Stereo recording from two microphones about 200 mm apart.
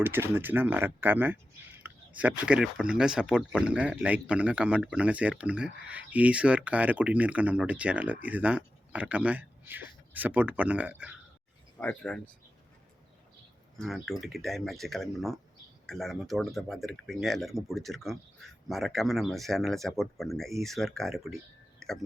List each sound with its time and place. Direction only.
0.0 s speech: 10° right (ahead or behind)
11.8 s speech: 5° left (ahead or behind)
13.7 s speech: centre (ahead or behind)